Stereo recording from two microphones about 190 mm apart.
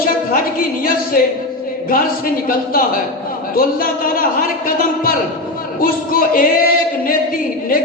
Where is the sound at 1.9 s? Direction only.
50° left (ahead or behind).